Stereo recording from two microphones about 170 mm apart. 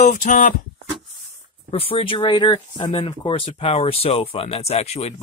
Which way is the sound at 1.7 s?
35° left (ahead or behind).